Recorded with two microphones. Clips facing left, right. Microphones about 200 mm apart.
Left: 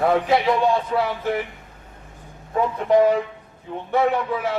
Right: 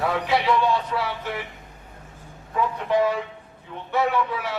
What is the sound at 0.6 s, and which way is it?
Speech, 50° left (ahead or behind).